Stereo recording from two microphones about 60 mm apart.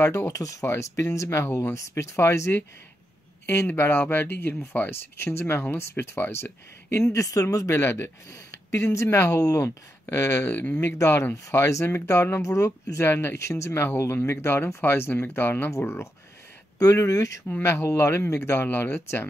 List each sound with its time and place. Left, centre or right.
0.1 s speech: left
0.7 s speech: left
7.1 s speech: left
7.7 s speech: left
9.4 s speech: left
10.1 s speech: left
12.4 s speech: left
13.0 s speech: left
16.7 s speech: left
17.6 s speech: left